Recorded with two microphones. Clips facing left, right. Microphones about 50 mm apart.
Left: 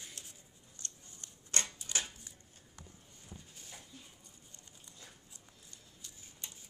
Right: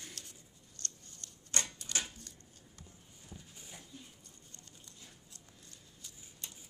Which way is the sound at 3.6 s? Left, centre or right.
Centre.